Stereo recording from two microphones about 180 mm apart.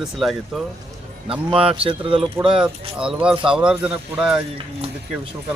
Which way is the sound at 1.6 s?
30° right (ahead or behind).